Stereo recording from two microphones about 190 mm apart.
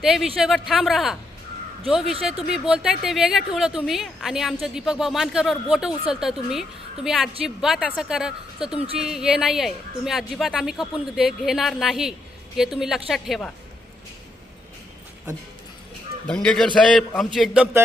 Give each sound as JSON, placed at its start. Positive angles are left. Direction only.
{"t": 0.0, "sound": "speech", "side_deg": 0}
{"t": 16.2, "sound": "speech", "side_deg": 5}